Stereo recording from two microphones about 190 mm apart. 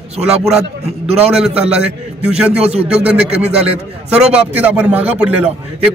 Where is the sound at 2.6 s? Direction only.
35° right (ahead or behind).